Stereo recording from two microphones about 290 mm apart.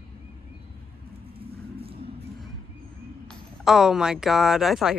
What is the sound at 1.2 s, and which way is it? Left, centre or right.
Vehicle, centre.